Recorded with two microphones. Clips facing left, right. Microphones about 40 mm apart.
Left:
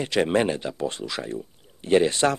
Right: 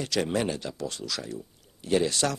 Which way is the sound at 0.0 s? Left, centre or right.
Left.